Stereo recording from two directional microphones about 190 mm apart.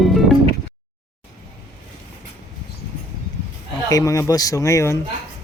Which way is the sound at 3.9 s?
15° left (ahead or behind).